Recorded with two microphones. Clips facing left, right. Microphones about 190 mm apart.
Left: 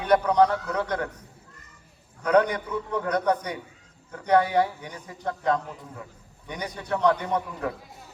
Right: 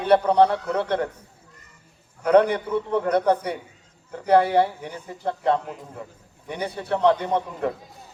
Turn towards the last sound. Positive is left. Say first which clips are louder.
# right 3 dB
turn(degrees=-30)  # may be behind; listen again after turning